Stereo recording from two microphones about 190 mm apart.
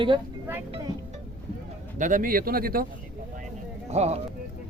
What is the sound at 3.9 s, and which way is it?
Speech, 35° right (ahead or behind).